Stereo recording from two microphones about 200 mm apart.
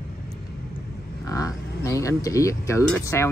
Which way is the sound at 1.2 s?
15° left (ahead or behind).